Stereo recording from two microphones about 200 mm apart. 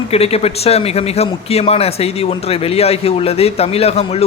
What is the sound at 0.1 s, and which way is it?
A man's voice, 30° left (ahead or behind).